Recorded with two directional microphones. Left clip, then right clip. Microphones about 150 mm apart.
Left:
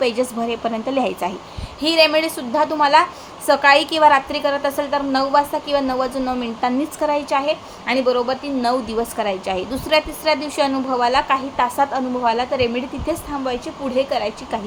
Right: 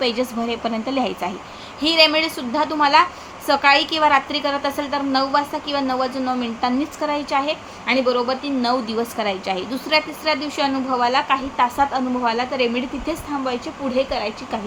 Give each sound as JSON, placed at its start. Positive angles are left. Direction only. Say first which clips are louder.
{"t": 0.0, "sound": "a woman's voice", "louder": "left 2 dB", "side_deg": 10}